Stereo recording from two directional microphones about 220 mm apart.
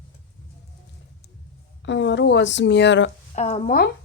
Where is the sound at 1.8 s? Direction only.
55° left (ahead or behind).